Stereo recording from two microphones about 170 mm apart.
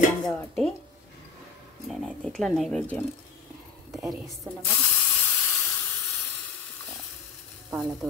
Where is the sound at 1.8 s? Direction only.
Centre (ahead or behind).